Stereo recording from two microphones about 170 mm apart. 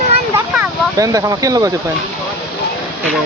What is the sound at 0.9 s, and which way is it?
Speech, 20° right (ahead or behind).